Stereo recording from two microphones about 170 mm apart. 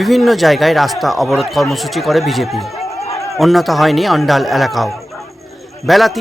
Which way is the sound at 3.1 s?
20° left (ahead or behind).